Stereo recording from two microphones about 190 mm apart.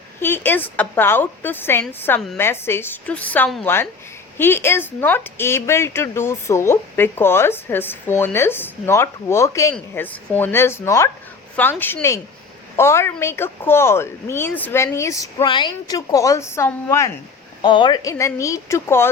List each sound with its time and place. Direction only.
0.2 s speech: 10° left (ahead or behind)
17.6 s speech: 25° left (ahead or behind)